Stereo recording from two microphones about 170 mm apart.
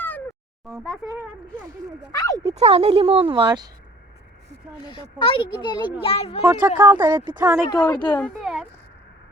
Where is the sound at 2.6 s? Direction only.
40° right (ahead or behind).